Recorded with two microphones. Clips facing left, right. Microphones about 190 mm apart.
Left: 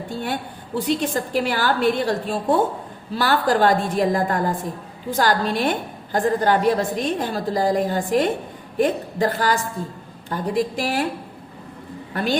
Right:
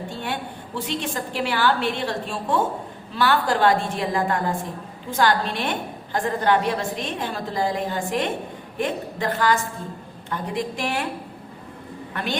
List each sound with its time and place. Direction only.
0.9 s a woman's voice: 40° left (ahead or behind)
12.1 s a woman's voice: 35° left (ahead or behind)